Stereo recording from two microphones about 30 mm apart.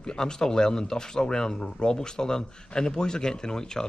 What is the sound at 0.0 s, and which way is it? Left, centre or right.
Speech, left.